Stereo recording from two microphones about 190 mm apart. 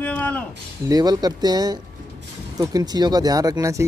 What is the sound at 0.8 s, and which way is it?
Speech, 20° right (ahead or behind).